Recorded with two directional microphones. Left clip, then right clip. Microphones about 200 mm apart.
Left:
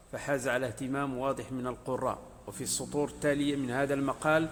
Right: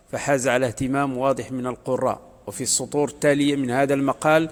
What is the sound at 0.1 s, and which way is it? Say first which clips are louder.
A man's voice: right 10 dB; 35° right (ahead or behind).